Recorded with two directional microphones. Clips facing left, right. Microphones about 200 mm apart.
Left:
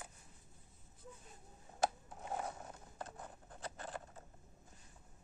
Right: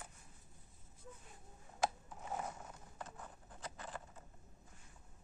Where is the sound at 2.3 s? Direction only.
35° left (ahead or behind).